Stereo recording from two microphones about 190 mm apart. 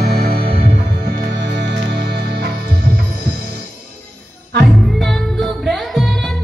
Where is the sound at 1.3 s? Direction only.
65° right (ahead or behind).